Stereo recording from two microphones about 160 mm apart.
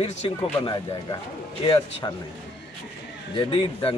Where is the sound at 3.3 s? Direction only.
35° left (ahead or behind).